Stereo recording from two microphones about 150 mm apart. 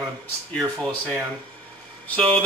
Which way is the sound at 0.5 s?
Centre (ahead or behind).